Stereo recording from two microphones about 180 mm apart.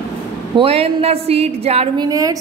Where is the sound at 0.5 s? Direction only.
30° right (ahead or behind).